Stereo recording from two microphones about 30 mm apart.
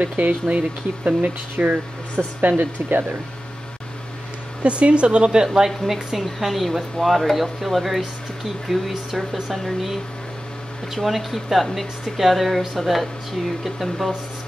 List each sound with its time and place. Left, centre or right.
0.0 s speech: right
4.6 s speech: right
5.4 s speech: right
6.1 s speech: centre
11.1 s speech: centre